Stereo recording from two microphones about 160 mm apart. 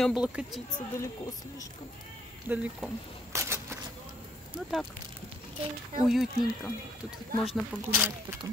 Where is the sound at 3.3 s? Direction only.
15° right (ahead or behind).